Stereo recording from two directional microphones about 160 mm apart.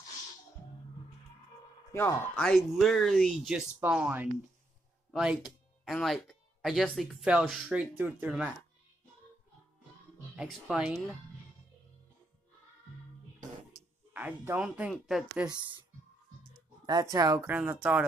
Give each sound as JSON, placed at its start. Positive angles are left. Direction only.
{"t": 1.9, "sound": "speech", "side_deg": 15}
{"t": 10.3, "sound": "speech", "side_deg": -5}
{"t": 14.1, "sound": "speech", "side_deg": -10}
{"t": 16.8, "sound": "speech", "side_deg": -25}